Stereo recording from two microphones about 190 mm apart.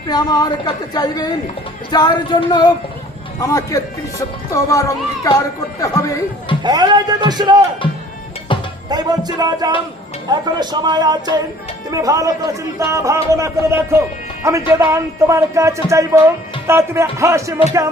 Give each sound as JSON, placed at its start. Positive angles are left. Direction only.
{"t": 0.1, "sound": "a woman's voice", "side_deg": 20}
{"t": 6.6, "sound": "speech", "side_deg": -25}
{"t": 8.5, "sound": "music", "side_deg": 25}
{"t": 8.9, "sound": "speech", "side_deg": -20}